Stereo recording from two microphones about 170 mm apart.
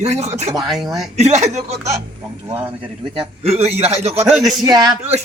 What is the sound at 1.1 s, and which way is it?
Speech, 40° right (ahead or behind).